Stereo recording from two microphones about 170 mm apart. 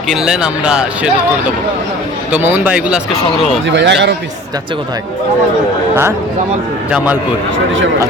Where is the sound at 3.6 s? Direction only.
90° right.